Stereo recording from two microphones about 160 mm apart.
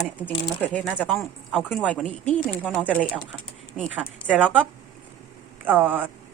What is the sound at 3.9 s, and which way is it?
Speech, 10° right (ahead or behind).